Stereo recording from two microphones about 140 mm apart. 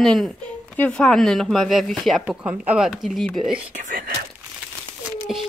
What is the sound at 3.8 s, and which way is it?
Speech, 75° right (ahead or behind).